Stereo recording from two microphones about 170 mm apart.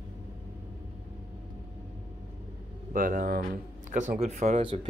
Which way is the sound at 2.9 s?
55° right (ahead or behind).